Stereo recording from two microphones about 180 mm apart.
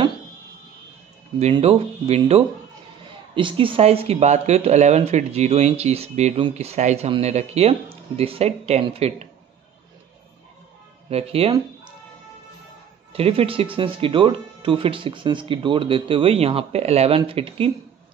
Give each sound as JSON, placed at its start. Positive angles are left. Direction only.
{"t": 1.4, "sound": "speech", "side_deg": -35}
{"t": 11.1, "sound": "speech", "side_deg": -35}
{"t": 13.1, "sound": "speech", "side_deg": -30}